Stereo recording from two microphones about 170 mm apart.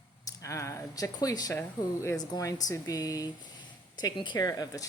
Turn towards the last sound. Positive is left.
turn(degrees=20)  # may be behind; listen again after turning